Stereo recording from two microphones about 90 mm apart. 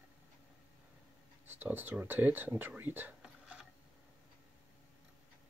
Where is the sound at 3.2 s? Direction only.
10° right (ahead or behind).